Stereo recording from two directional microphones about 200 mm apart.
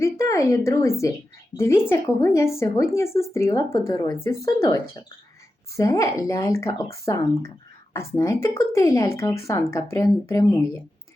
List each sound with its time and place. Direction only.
0.0 s speech: 15° left (ahead or behind)